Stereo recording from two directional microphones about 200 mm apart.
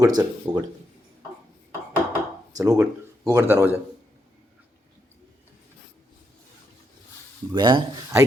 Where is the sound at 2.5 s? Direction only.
15° right (ahead or behind).